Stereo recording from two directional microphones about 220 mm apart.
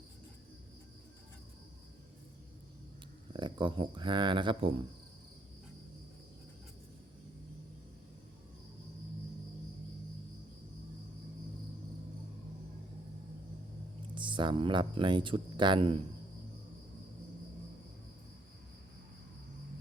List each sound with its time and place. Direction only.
3.3 s speech: 20° right (ahead or behind)
14.2 s speech: 20° right (ahead or behind)